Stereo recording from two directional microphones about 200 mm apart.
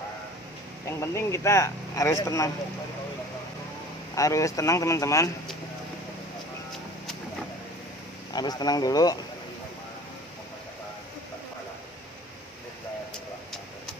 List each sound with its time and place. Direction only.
0.8 s speech: 15° left (ahead or behind)
4.1 s speech: 15° left (ahead or behind)
8.3 s speech: 20° left (ahead or behind)